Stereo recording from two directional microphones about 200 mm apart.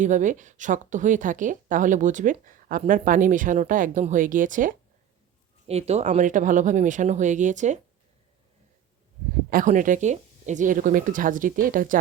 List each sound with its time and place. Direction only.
0.0 s speech: 40° right (ahead or behind)
9.5 s speech: 40° right (ahead or behind)